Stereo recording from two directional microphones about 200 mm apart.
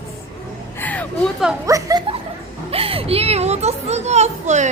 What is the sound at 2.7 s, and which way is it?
A child's voice, 30° right (ahead or behind).